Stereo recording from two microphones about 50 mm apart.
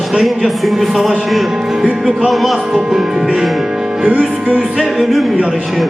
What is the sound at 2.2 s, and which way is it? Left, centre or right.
Speech, centre.